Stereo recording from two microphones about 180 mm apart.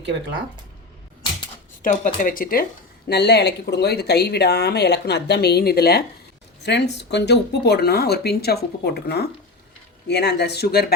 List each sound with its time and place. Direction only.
1.8 s speech: 45° left (ahead or behind)
3.1 s speech: 65° left (ahead or behind)
6.6 s speech: 70° left (ahead or behind)